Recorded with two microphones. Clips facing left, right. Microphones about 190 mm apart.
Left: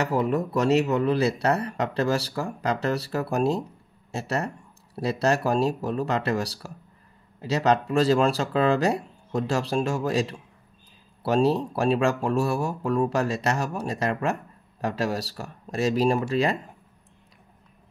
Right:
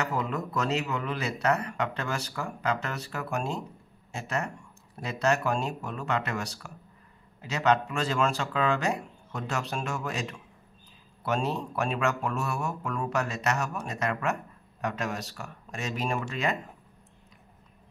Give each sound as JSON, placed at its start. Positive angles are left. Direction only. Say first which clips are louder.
{"t": 0.0, "sound": "speech", "louder": "left 7 dB", "side_deg": 35}